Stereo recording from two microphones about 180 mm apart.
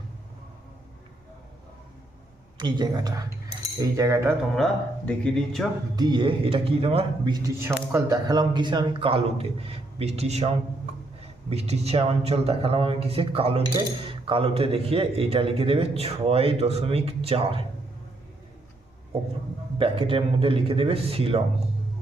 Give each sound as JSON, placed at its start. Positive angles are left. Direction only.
{"t": 2.6, "sound": "a man's voice", "side_deg": -25}
{"t": 4.5, "sound": "speech", "side_deg": 5}
{"t": 6.0, "sound": "a man's voice", "side_deg": -25}
{"t": 19.8, "sound": "a man's voice", "side_deg": -30}